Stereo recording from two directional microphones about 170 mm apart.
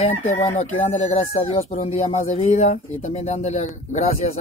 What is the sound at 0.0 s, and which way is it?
Speech, 40° left (ahead or behind).